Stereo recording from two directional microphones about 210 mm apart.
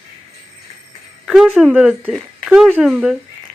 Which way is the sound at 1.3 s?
5° right (ahead or behind).